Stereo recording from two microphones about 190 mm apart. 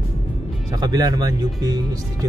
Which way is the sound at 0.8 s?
20° right (ahead or behind).